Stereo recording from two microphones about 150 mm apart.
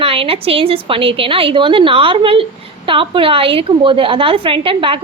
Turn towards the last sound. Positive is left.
turn(degrees=-35)  # may be behind; listen again after turning